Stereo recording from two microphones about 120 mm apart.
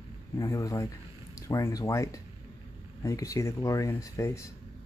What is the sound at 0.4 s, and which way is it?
Speech, 30° left (ahead or behind).